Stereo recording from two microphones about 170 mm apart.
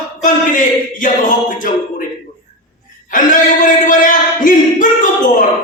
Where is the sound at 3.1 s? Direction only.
50° left (ahead or behind).